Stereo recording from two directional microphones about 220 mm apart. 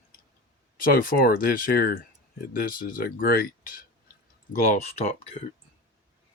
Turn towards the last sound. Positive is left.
turn(degrees=25)  # may be behind; listen again after turning